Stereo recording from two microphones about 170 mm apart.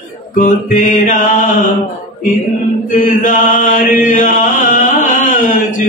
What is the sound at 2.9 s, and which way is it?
Chant, 50° left (ahead or behind).